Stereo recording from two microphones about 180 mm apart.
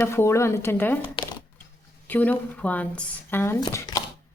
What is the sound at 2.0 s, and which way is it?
A woman's voice, 10° left (ahead or behind).